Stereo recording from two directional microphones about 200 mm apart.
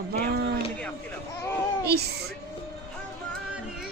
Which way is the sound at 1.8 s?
55° right (ahead or behind).